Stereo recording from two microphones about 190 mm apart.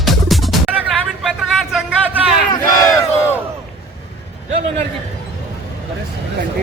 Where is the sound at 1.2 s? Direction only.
5° right (ahead or behind).